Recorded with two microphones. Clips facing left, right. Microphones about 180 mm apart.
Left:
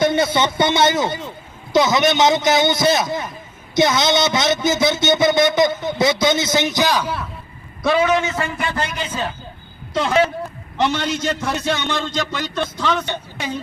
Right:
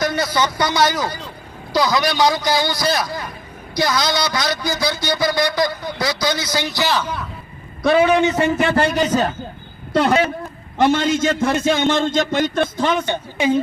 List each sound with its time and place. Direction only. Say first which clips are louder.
0.0 s speech: left 3 dB; 25° left (ahead or behind); by 7.3 s 5° left (ahead or behind)
8.0 s a man's voice: right 3 dB; 35° right (ahead or behind)
8.6 s a man's voice: right 7 dB; 60° right (ahead or behind)
8.9 s a man's voice: right 8 dB; 40° right (ahead or behind)
9.9 s a man's voice: right 5 dB; 60° right (ahead or behind)
10.8 s a man's voice: right 4 dB; 50° right (ahead or behind)